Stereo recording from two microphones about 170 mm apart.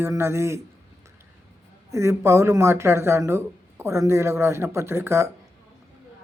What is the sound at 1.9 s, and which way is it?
Speech, 15° right (ahead or behind).